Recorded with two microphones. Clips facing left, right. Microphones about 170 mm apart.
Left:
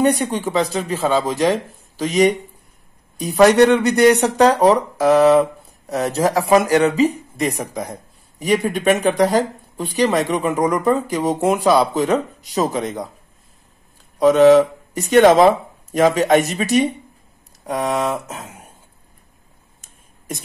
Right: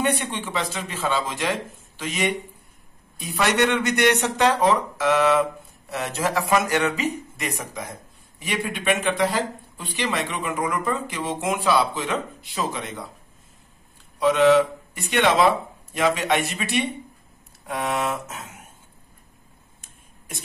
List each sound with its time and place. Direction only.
0.0 s speech: 40° left (ahead or behind)
14.2 s speech: 40° left (ahead or behind)
19.8 s a sound: 40° left (ahead or behind)